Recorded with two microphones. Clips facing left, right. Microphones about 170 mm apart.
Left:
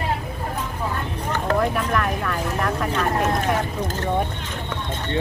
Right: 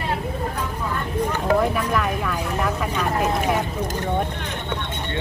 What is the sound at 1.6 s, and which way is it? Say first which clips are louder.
Speech: even; 5° right (ahead or behind).